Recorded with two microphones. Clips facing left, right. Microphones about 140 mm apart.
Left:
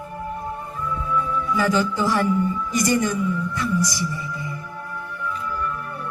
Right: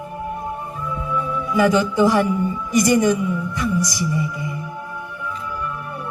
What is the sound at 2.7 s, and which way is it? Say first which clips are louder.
A woman's voice: right 6 dB; 15° right (ahead or behind).